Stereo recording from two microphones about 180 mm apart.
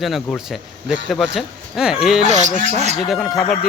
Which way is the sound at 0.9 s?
Centre (ahead or behind).